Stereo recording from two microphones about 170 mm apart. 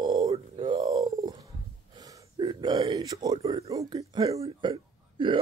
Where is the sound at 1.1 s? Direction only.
20° right (ahead or behind).